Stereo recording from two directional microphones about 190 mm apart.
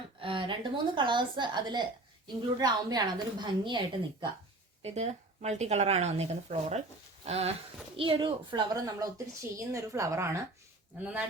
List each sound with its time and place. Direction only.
0.2 s a woman's voice: 25° right (ahead or behind)